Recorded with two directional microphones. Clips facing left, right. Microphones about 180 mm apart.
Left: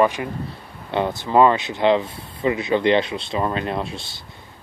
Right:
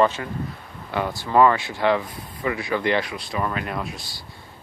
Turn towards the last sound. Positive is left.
turn(degrees=25)  # may be behind; listen again after turning